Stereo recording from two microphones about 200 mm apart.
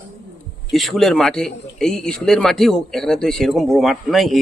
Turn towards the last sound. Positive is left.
turn(degrees=0)  # may be behind; listen again after turning